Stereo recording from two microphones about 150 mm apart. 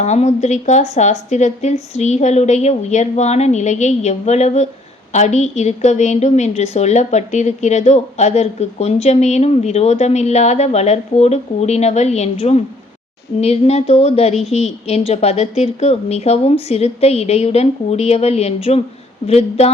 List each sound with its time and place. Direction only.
0.0 s a woman's voice: 50° left (ahead or behind)